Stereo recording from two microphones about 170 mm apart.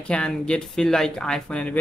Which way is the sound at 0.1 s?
5° left (ahead or behind).